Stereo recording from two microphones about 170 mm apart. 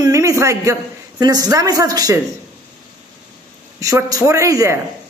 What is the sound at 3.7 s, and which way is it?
A man's voice, 20° right (ahead or behind).